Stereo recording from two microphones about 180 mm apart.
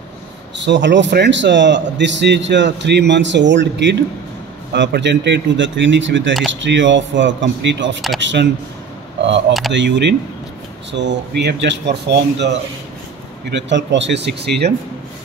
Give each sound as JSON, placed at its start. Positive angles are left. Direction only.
{"t": 0.6, "sound": "speech", "side_deg": -80}
{"t": 9.7, "sound": "speech", "side_deg": -75}
{"t": 13.5, "sound": "speech", "side_deg": -80}